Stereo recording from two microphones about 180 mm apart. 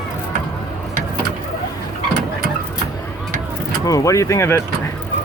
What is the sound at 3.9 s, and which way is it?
Speech, 20° left (ahead or behind).